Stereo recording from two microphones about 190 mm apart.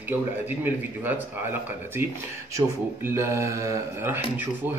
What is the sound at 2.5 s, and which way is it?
A man's voice, 15° right (ahead or behind).